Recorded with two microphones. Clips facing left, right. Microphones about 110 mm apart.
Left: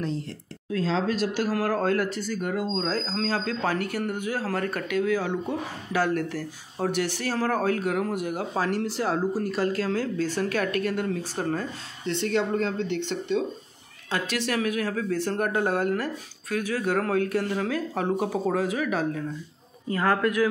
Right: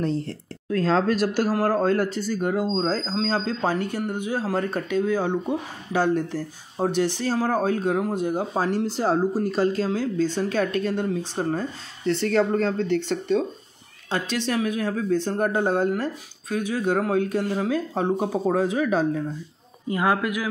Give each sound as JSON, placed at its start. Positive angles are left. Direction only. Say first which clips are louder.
{"t": 0.7, "sound": "speech", "louder": "right 5 dB", "side_deg": -55}
{"t": 1.5, "sound": "speech", "louder": "right 2 dB", "side_deg": -30}
{"t": 12.1, "sound": "speech", "louder": "right 4 dB", "side_deg": -40}
{"t": 14.1, "sound": "speech", "louder": "right 2 dB", "side_deg": -25}
{"t": 19.9, "sound": "a man's voice", "louder": "right 1 dB", "side_deg": -15}